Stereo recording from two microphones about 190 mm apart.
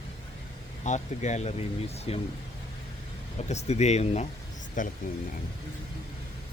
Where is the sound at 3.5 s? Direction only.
35° left (ahead or behind).